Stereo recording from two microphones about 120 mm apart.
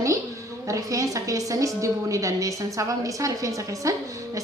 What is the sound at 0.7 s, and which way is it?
A woman's voice, 25° right (ahead or behind).